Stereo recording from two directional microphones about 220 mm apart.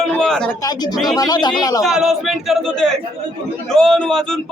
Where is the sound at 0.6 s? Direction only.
20° left (ahead or behind).